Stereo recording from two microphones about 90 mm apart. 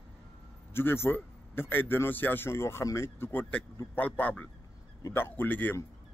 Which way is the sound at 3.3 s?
20° left (ahead or behind).